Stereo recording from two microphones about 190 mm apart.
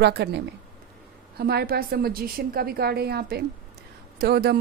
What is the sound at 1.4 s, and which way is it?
A woman's voice, 55° right (ahead or behind).